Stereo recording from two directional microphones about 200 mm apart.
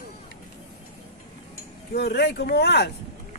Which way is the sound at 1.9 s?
55° left (ahead or behind).